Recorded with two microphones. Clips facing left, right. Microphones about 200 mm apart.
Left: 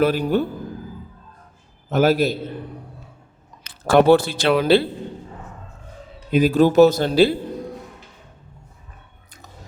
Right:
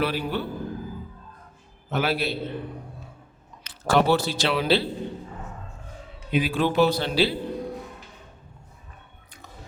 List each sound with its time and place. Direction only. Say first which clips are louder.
0.0 s speech: left 8 dB; 45° left (ahead or behind)
1.9 s speech: left 8 dB; 45° left (ahead or behind)
3.6 s speech: left 6 dB; 55° left (ahead or behind)
6.3 s speech: left 8 dB; 40° left (ahead or behind)